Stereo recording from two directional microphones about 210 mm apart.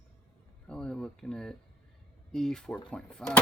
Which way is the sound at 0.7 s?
5° left (ahead or behind).